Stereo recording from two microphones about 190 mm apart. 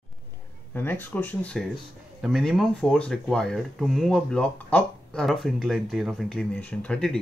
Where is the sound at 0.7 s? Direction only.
10° left (ahead or behind).